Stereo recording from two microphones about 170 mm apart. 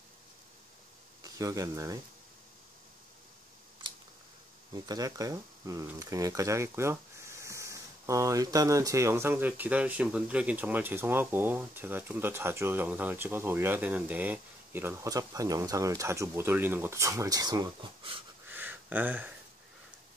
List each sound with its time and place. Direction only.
1.2 s a man's voice: 20° right (ahead or behind)
4.7 s speech: 25° right (ahead or behind)
18.5 s a sound: 10° right (ahead or behind)